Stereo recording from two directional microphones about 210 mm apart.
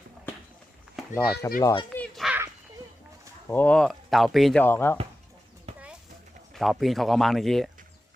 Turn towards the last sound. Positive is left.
turn(degrees=0)  # may be behind; listen again after turning